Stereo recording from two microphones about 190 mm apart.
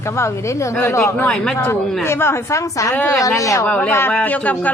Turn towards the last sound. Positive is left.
turn(degrees=10)  # may be behind; listen again after turning